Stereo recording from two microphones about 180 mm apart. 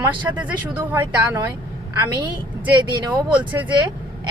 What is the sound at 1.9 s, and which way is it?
Speech, 25° right (ahead or behind).